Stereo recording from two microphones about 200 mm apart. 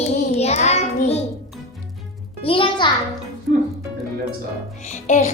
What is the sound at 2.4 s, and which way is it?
Speech, 25° left (ahead or behind).